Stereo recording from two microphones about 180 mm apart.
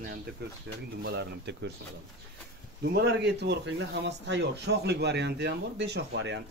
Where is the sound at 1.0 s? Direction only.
65° right (ahead or behind).